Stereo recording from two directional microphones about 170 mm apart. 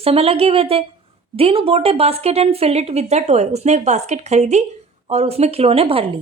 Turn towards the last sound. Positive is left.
turn(degrees=-35)  # may be behind; listen again after turning